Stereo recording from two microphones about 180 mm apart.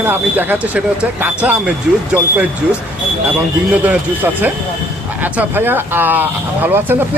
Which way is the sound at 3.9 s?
10° right (ahead or behind).